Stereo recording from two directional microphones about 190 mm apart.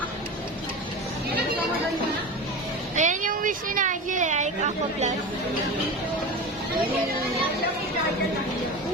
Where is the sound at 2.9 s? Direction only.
40° right (ahead or behind).